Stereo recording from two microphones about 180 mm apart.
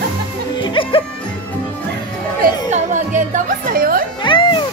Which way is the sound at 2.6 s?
40° right (ahead or behind).